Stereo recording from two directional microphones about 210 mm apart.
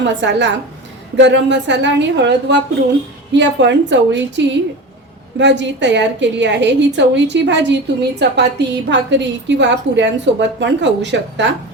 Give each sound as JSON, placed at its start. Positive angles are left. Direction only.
{"t": 0.0, "sound": "a woman's voice", "side_deg": -55}